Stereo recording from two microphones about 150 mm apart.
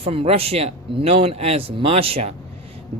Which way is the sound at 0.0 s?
40° right (ahead or behind).